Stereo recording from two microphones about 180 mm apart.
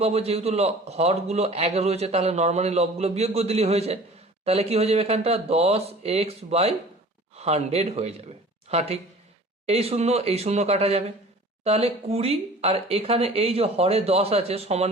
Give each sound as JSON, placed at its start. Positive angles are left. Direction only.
{"t": 0.0, "sound": "a man's voice", "side_deg": -35}